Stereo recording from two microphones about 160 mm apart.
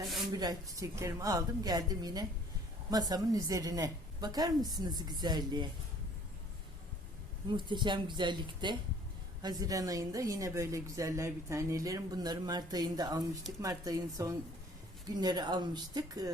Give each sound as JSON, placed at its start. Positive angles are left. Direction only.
{"t": 0.3, "sound": "a woman's voice", "side_deg": -25}
{"t": 7.4, "sound": "a woman's voice", "side_deg": -30}